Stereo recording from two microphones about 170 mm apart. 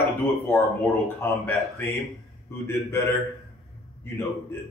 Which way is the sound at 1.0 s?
10° left (ahead or behind).